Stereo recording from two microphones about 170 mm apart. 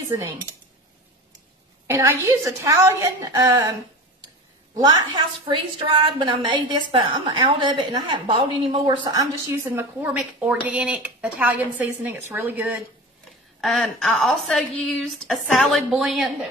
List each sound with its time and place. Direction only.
1.9 s a woman's voice: 15° right (ahead or behind)
4.7 s a woman's voice: 20° right (ahead or behind)
13.6 s a woman's voice: centre (ahead or behind)